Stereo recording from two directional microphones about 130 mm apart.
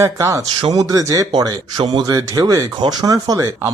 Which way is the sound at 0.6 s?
35° right (ahead or behind).